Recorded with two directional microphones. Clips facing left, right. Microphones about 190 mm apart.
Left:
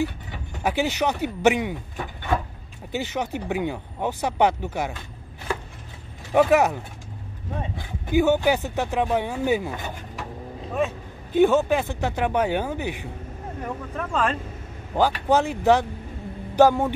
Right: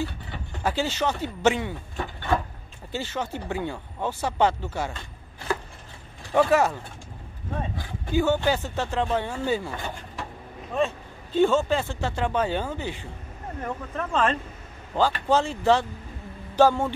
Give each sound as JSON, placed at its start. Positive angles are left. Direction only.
{"t": 0.0, "sound": "speech", "side_deg": 15}
{"t": 6.3, "sound": "speech", "side_deg": 15}
{"t": 11.3, "sound": "speech", "side_deg": 15}